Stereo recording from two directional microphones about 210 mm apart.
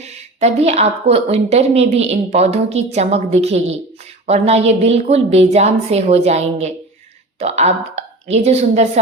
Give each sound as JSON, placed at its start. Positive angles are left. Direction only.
{"t": 0.0, "sound": "a woman's voice", "side_deg": -30}